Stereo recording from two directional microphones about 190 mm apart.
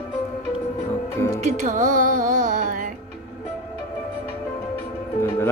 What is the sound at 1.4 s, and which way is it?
Music, 45° right (ahead or behind).